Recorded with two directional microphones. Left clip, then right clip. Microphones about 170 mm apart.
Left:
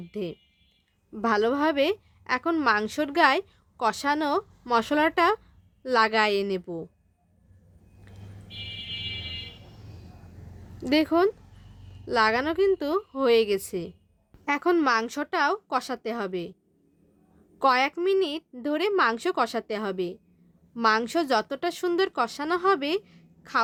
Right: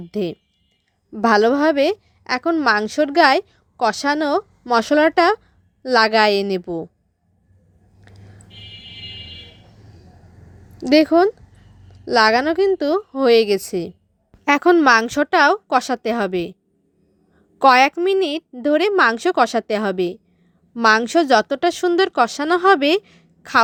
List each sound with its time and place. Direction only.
0.1 s a woman's voice: 40° right (ahead or behind)
8.1 s a sound: 30° right (ahead or behind)
10.8 s a woman's voice: 35° right (ahead or behind)
17.6 s a woman's voice: 35° right (ahead or behind)